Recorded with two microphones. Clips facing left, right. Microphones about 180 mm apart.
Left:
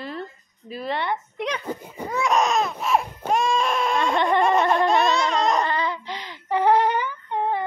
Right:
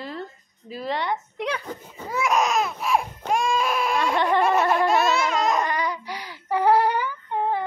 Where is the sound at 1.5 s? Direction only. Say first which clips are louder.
Left 3 dB; 10° left (ahead or behind).